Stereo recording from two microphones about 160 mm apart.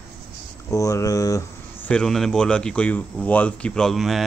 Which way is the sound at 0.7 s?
20° left (ahead or behind).